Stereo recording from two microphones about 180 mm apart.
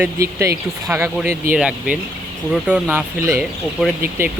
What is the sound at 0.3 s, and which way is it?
Speech, 15° right (ahead or behind).